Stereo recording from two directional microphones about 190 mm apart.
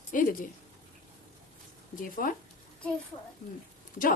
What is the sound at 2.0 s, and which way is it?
Speech, 45° left (ahead or behind).